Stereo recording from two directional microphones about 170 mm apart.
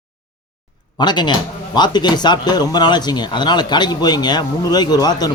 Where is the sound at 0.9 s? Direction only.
25° left (ahead or behind).